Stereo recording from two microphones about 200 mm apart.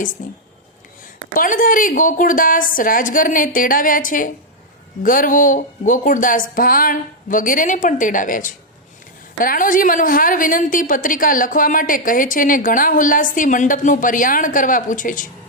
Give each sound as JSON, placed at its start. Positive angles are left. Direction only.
{"t": 0.2, "sound": "a woman's voice", "side_deg": 45}